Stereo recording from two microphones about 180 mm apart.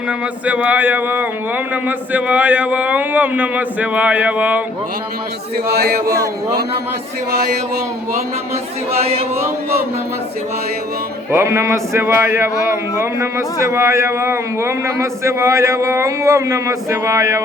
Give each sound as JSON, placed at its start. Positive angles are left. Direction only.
{"t": 0.4, "sound": "a man's voice", "side_deg": -10}
{"t": 5.6, "sound": "music", "side_deg": -60}
{"t": 8.9, "sound": "speech", "side_deg": -35}
{"t": 11.3, "sound": "a man's voice", "side_deg": -15}